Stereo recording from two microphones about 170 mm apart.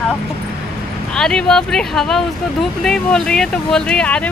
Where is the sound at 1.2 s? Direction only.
5° left (ahead or behind).